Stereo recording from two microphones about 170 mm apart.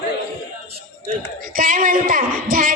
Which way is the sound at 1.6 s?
55° right (ahead or behind).